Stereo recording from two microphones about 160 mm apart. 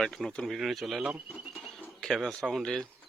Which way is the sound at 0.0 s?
5° left (ahead or behind).